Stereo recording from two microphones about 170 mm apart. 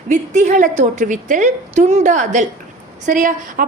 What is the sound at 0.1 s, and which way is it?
A woman's voice, 50° right (ahead or behind).